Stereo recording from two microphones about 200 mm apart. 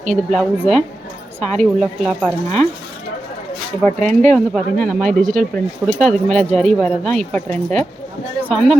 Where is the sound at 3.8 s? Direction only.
5° left (ahead or behind).